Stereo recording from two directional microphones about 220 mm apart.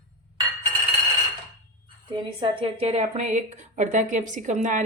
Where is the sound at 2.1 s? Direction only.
20° right (ahead or behind).